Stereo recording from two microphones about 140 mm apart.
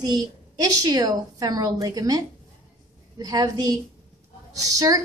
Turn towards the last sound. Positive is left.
turn(degrees=-25)  # may be behind; listen again after turning